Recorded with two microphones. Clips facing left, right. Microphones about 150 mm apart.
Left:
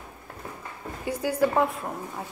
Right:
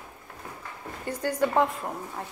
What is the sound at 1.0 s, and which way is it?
A woman's voice, 10° left (ahead or behind).